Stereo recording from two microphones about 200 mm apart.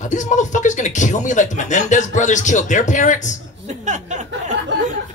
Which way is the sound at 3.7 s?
35° right (ahead or behind).